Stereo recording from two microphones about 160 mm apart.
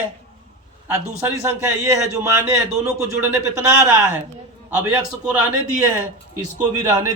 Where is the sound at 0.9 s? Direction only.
15° right (ahead or behind).